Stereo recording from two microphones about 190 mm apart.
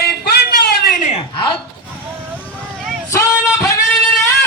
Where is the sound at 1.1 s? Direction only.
25° left (ahead or behind).